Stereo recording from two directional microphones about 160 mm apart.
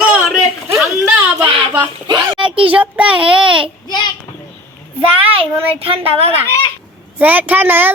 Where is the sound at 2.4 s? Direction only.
35° right (ahead or behind).